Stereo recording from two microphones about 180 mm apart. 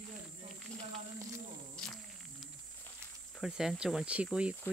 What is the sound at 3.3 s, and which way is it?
Speech, centre (ahead or behind).